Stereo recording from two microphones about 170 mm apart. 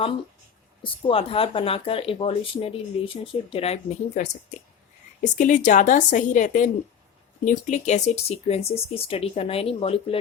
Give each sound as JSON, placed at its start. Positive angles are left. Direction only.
{"t": 0.8, "sound": "a woman's voice", "side_deg": 30}